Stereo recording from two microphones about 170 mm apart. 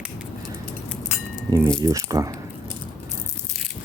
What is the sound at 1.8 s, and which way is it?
Speech, 20° right (ahead or behind).